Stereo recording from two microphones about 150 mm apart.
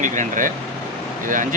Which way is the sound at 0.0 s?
60° right (ahead or behind).